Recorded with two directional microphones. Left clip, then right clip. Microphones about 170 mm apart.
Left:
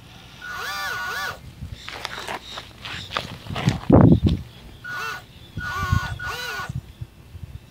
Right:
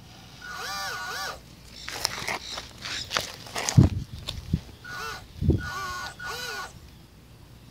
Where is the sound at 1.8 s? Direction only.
25° right (ahead or behind).